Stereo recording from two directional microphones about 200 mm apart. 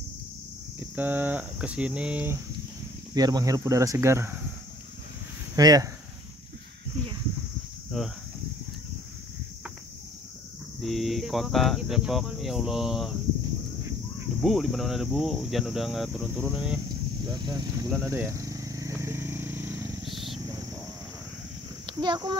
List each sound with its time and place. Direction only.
0.9 s speech: 10° right (ahead or behind)
5.6 s speech: 20° right (ahead or behind)
7.9 s speech: centre (ahead or behind)
10.8 s speech: centre (ahead or behind)
14.4 s speech: centre (ahead or behind)
17.3 s vehicle: 20° right (ahead or behind)
20.1 s wild animals: centre (ahead or behind)
21.8 s a child's voice: 20° right (ahead or behind)